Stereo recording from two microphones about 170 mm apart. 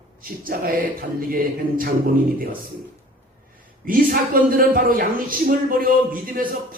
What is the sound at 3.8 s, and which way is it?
A man's voice, 55° right (ahead or behind).